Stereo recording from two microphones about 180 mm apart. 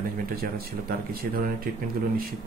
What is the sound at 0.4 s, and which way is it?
Speech, 55° right (ahead or behind).